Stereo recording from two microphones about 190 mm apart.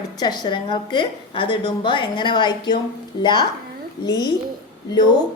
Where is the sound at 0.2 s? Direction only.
20° left (ahead or behind).